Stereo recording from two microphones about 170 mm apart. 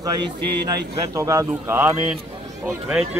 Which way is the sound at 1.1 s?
20° right (ahead or behind).